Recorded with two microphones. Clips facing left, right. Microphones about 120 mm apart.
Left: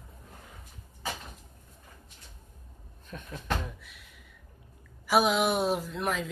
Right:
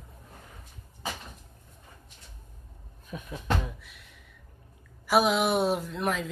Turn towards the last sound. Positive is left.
turn(degrees=0)  # may be behind; listen again after turning